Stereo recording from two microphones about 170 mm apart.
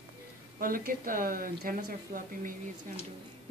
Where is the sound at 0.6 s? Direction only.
55° right (ahead or behind).